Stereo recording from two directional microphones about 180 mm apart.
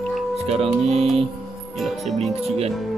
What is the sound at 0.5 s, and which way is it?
Speech, 35° right (ahead or behind).